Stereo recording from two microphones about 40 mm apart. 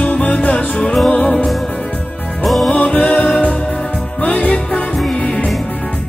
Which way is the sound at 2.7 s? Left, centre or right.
Left.